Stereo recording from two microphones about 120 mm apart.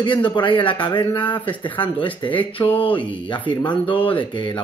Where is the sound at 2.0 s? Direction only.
45° left (ahead or behind).